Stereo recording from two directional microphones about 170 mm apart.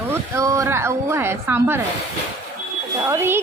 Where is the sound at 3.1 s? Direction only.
15° right (ahead or behind).